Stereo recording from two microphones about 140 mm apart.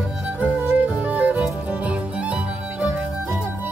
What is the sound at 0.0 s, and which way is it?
Music, 10° right (ahead or behind).